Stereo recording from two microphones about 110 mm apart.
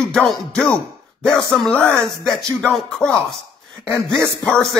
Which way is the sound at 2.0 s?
Centre (ahead or behind).